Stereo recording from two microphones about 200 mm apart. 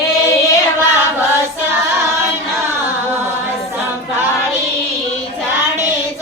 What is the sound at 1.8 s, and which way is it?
Child singing, 15° right (ahead or behind).